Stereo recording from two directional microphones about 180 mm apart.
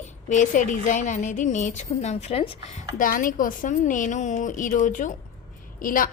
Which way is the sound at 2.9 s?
50° left (ahead or behind).